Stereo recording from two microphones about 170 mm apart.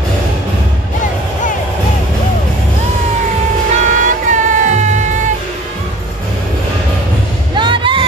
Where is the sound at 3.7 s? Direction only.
45° right (ahead or behind).